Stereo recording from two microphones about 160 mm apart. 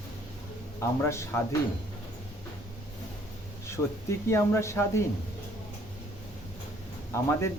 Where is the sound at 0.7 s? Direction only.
15° left (ahead or behind).